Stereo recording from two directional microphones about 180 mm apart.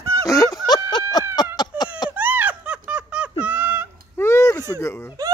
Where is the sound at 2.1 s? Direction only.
10° right (ahead or behind).